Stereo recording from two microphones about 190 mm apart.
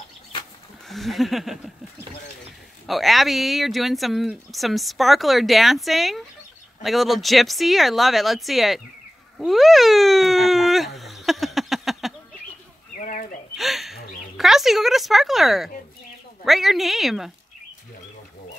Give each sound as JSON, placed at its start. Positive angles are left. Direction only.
{"t": 0.8, "sound": "speech", "side_deg": 0}
{"t": 2.9, "sound": "speech", "side_deg": 0}
{"t": 9.4, "sound": "cat", "side_deg": 0}
{"t": 13.0, "sound": "a sound", "side_deg": 45}
{"t": 13.6, "sound": "a woman's voice", "side_deg": 0}